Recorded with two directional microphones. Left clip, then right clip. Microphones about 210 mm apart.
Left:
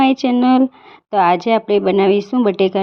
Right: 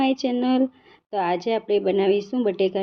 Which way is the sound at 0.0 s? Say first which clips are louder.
Left 8 dB; 35° left (ahead or behind).